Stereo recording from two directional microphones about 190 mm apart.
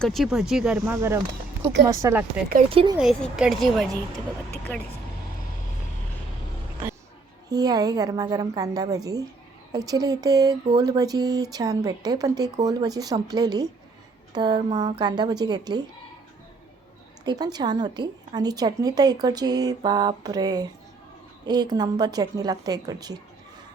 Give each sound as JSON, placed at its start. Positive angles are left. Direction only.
{"t": 0.0, "sound": "speech", "side_deg": 0}
{"t": 2.6, "sound": "a woman's voice", "side_deg": -30}
{"t": 3.0, "sound": "speech", "side_deg": -5}
{"t": 7.5, "sound": "a woman's voice", "side_deg": -20}
{"t": 17.2, "sound": "a woman's voice", "side_deg": -20}